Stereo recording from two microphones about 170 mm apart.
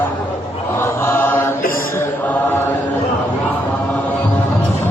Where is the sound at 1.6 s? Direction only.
55° left (ahead or behind).